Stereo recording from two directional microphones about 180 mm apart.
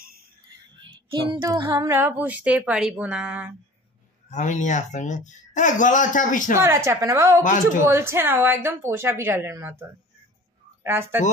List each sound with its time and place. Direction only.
0.7 s female singing: 25° right (ahead or behind); by 3.5 s 10° right (ahead or behind)
4.3 s speech: 40° left (ahead or behind)
6.6 s female singing: 15° right (ahead or behind)
10.8 s speech: 15° right (ahead or behind)